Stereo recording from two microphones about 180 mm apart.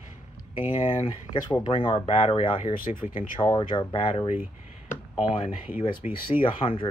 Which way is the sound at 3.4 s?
30° left (ahead or behind).